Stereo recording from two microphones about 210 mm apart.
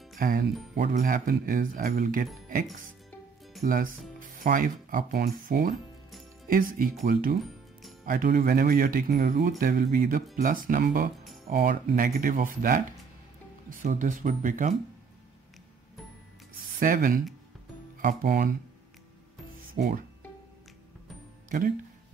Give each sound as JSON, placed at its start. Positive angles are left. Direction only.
{"t": 0.2, "sound": "speech", "side_deg": -45}
{"t": 3.6, "sound": "speech", "side_deg": -40}
{"t": 7.3, "sound": "music", "side_deg": 0}
{"t": 8.0, "sound": "speech", "side_deg": -40}
{"t": 16.8, "sound": "speech", "side_deg": -40}
{"t": 19.7, "sound": "speech", "side_deg": -45}